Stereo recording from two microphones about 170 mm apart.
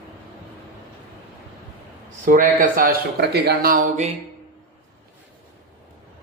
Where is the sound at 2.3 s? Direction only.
55° right (ahead or behind).